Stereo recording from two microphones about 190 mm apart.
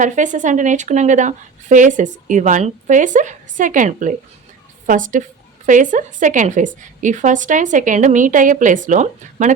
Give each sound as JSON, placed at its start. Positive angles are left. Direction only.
{"t": 0.0, "sound": "a woman's voice", "side_deg": -40}